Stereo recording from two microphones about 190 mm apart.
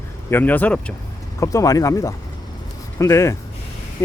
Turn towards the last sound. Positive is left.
turn(degrees=15)  # may be behind; listen again after turning